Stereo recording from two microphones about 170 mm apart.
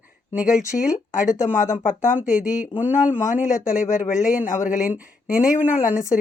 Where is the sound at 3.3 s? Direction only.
50° left (ahead or behind).